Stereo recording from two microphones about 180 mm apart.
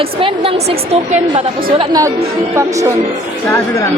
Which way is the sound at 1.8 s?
20° right (ahead or behind).